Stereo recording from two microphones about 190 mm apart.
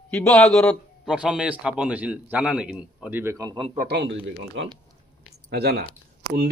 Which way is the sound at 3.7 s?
60° right (ahead or behind).